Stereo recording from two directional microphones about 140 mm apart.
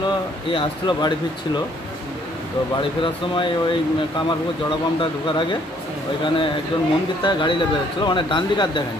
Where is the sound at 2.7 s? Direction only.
35° left (ahead or behind).